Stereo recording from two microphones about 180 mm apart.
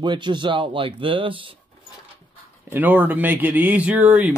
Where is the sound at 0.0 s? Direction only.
25° right (ahead or behind).